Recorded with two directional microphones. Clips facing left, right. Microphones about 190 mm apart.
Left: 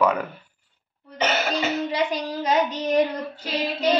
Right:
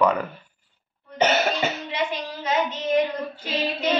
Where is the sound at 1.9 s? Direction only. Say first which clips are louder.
Left 3 dB; 40° left (ahead or behind).